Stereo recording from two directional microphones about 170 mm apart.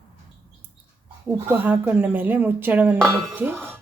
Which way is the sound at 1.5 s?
10° right (ahead or behind).